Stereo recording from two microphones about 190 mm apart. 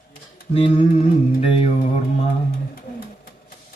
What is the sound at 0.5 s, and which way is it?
Mantra, 30° left (ahead or behind).